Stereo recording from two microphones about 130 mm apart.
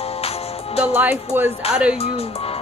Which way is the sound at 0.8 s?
10° right (ahead or behind).